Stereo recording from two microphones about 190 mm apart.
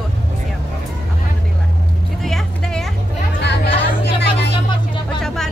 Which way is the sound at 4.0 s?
60° left (ahead or behind).